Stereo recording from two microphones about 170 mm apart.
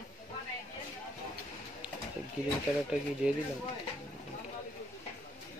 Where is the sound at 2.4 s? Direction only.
5° right (ahead or behind).